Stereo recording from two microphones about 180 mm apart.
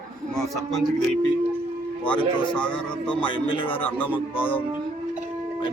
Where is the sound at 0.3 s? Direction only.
Centre (ahead or behind).